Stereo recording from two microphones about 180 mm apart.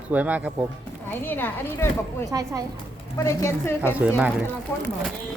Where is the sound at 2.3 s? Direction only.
20° right (ahead or behind).